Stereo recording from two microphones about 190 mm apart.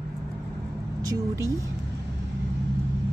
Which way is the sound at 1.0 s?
15° right (ahead or behind).